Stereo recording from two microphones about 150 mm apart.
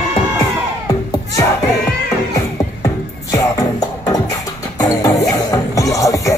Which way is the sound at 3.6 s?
25° left (ahead or behind).